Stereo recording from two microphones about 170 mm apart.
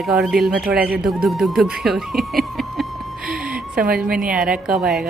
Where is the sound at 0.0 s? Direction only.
5° right (ahead or behind).